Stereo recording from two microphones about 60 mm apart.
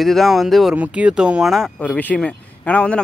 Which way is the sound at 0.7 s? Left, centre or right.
Right.